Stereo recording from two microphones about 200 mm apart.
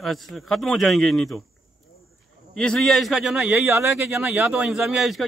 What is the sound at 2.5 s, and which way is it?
Speech, 5° left (ahead or behind).